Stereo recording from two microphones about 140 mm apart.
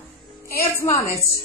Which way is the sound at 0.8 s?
20° left (ahead or behind).